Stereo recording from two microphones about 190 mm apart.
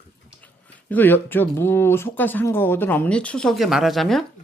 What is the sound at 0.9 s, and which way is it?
Speech, 10° left (ahead or behind).